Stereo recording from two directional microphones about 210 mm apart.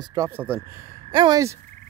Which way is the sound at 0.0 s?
15° right (ahead or behind).